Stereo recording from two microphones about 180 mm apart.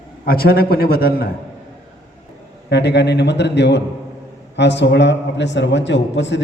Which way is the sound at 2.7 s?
70° left (ahead or behind).